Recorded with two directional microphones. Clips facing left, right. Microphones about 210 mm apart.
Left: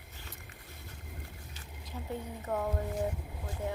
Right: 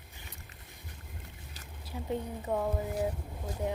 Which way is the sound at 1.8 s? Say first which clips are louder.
Right 4 dB; 15° right (ahead or behind).